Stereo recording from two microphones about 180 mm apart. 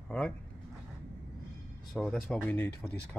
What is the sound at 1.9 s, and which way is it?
Speech, centre (ahead or behind).